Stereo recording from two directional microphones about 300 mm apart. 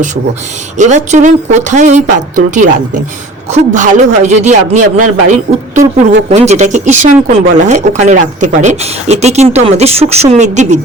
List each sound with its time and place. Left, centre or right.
0.8 s speech: right